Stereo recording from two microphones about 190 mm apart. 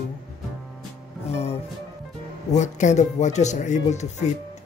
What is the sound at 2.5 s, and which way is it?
Speech, 40° left (ahead or behind).